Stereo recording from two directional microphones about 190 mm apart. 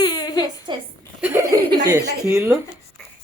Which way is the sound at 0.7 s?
25° right (ahead or behind).